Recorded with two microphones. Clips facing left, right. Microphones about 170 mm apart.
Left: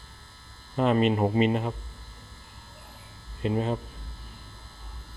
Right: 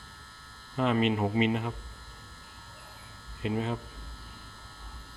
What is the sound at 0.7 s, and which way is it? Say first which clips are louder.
Speech: left 4 dB; 45° left (ahead or behind).